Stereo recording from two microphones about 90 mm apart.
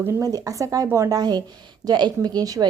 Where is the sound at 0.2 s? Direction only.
40° right (ahead or behind).